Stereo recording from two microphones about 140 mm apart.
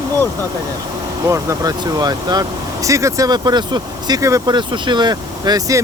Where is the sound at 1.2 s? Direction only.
20° right (ahead or behind).